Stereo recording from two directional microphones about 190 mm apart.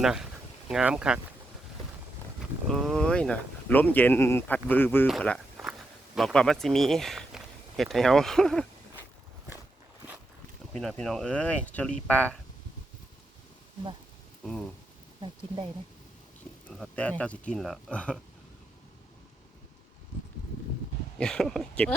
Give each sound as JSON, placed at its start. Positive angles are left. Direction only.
{"t": 0.0, "sound": "speech", "side_deg": -5}
{"t": 2.6, "sound": "speech", "side_deg": 0}
{"t": 10.8, "sound": "speech", "side_deg": 0}
{"t": 15.2, "sound": "speech", "side_deg": -25}
{"t": 16.6, "sound": "speech", "side_deg": 5}
{"t": 21.2, "sound": "speech", "side_deg": 5}